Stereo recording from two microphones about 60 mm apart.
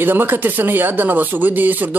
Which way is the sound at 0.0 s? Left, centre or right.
Right.